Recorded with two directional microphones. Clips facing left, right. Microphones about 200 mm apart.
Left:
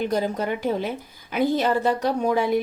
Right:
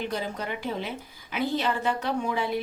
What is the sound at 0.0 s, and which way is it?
A woman's voice, 45° left (ahead or behind).